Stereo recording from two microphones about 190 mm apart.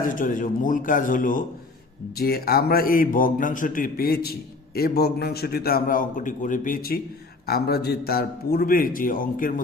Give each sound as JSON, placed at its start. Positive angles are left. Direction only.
{"t": 0.0, "sound": "a man's voice", "side_deg": 45}